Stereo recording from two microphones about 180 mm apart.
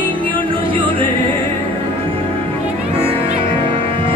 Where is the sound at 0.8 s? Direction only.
30° right (ahead or behind).